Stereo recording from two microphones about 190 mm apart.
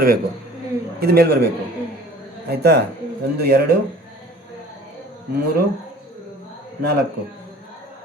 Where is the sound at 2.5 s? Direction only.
60° right (ahead or behind).